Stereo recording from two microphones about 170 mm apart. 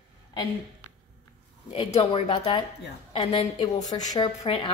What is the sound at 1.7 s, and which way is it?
A woman's voice, 30° left (ahead or behind).